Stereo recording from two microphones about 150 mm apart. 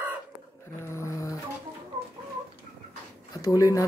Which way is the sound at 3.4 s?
20° left (ahead or behind).